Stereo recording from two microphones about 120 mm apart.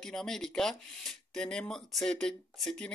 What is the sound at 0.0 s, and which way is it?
Speech, 5° left (ahead or behind).